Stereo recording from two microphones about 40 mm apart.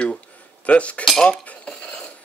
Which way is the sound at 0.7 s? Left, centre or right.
Left.